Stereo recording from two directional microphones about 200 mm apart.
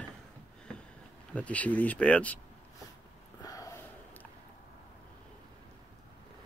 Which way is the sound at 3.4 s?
15° left (ahead or behind).